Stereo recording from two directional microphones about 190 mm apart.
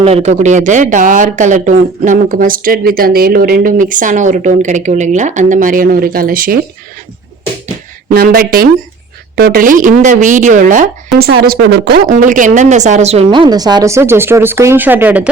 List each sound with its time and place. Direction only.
0.0 s speech: 35° right (ahead or behind); by 6.6 s 50° right (ahead or behind)
8.1 s speech: 50° right (ahead or behind)
11.2 s speech: 55° right (ahead or behind)
12.1 s a woman's voice: 45° right (ahead or behind); by 15.3 s 10° right (ahead or behind)